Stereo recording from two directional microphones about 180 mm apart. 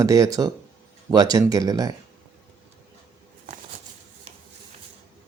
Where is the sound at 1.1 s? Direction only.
20° right (ahead or behind).